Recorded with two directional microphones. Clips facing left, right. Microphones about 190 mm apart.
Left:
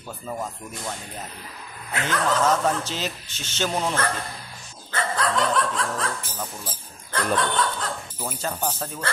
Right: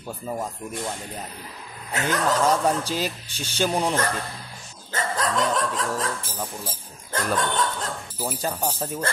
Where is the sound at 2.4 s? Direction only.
10° right (ahead or behind).